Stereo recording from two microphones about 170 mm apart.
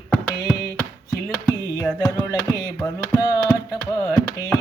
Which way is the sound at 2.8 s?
15° left (ahead or behind).